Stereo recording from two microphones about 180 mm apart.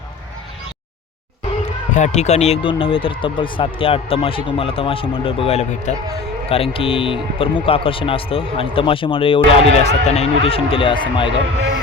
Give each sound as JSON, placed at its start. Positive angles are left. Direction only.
{"t": 1.6, "sound": "speech", "side_deg": 40}